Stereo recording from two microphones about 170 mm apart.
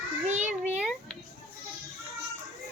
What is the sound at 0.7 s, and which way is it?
Speech, 5° right (ahead or behind).